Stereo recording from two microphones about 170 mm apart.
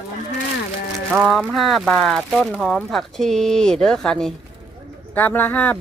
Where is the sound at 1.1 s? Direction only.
5° right (ahead or behind).